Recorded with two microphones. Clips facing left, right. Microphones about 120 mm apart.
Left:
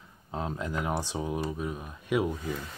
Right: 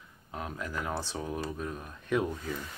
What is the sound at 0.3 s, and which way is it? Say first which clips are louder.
Speech: left 4 dB; 25° left (ahead or behind).